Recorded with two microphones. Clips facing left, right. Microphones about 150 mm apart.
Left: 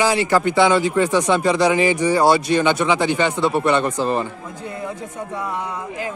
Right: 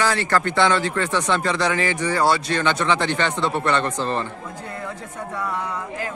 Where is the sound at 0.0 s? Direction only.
10° left (ahead or behind).